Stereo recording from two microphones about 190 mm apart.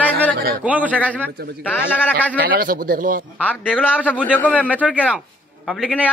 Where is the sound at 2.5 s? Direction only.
50° right (ahead or behind).